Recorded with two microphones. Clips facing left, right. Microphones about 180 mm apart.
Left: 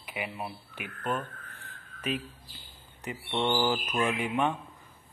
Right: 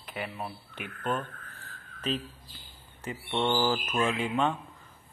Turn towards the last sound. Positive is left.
turn(degrees=15)  # may be behind; listen again after turning